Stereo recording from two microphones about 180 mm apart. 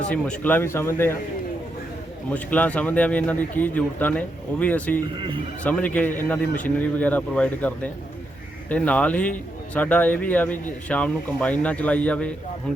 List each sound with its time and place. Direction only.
0.1 s a man's voice: 10° left (ahead or behind)
2.3 s a man's voice: 10° left (ahead or behind)
5.1 s speech: 25° right (ahead or behind)
5.6 s a man's voice: 10° left (ahead or behind)
8.7 s a man's voice: 5° left (ahead or behind)